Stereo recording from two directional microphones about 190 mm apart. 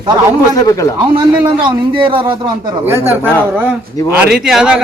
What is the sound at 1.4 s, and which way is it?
Speech, 25° right (ahead or behind).